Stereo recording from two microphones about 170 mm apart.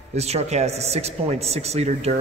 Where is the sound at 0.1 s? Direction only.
40° right (ahead or behind).